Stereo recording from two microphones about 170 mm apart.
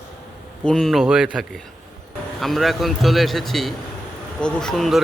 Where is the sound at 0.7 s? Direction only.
Centre (ahead or behind).